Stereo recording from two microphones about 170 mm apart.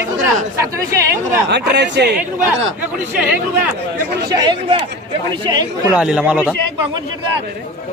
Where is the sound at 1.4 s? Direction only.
90° right.